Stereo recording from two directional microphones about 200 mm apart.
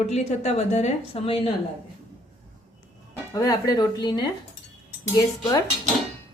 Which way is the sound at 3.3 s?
20° left (ahead or behind).